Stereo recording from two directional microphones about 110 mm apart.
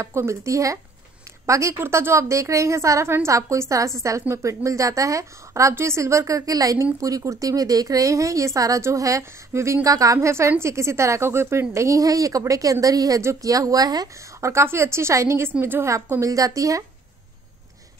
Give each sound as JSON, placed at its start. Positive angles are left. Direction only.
{"t": 0.0, "sound": "a woman's voice", "side_deg": -25}